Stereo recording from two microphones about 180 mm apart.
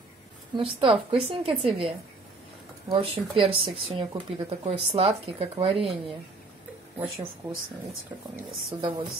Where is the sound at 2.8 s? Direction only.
30° right (ahead or behind).